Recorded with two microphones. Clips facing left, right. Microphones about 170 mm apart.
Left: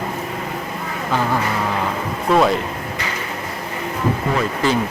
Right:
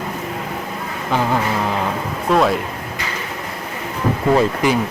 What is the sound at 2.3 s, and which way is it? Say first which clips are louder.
Speech: even; centre (ahead or behind).